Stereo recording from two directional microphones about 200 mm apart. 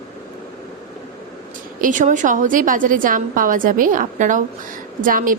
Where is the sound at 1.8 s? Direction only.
40° right (ahead or behind).